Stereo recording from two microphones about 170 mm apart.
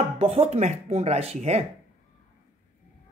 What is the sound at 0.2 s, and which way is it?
Speech, 35° right (ahead or behind).